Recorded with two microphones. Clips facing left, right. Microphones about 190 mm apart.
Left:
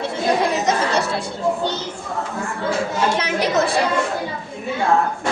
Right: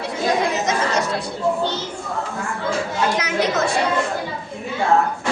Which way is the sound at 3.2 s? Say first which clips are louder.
Left 1 dB; 30° left (ahead or behind).